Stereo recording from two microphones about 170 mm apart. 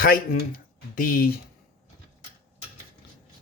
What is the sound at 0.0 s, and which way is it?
Speech, 55° left (ahead or behind).